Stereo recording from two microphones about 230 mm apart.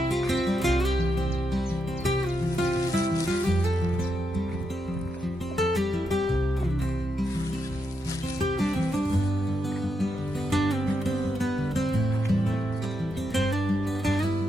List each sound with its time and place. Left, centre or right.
0.1 s music: centre
5.5 s music: centre
10.5 s music: centre